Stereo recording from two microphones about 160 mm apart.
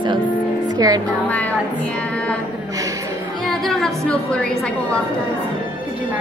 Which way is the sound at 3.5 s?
Centre (ahead or behind).